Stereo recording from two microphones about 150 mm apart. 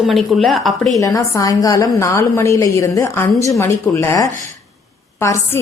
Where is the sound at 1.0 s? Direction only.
20° left (ahead or behind).